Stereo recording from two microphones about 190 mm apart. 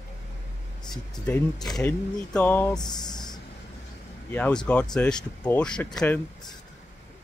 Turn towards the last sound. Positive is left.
turn(degrees=5)  # may be behind; listen again after turning